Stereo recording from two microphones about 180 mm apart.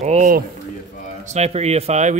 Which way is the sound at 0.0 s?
40° right (ahead or behind).